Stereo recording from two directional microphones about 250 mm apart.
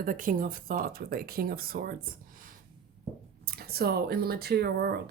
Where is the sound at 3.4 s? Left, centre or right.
Right.